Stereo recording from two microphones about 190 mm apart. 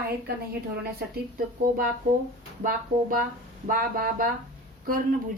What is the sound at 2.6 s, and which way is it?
Speech, 50° right (ahead or behind).